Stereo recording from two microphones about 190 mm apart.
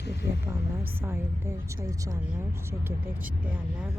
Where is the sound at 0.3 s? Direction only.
15° right (ahead or behind).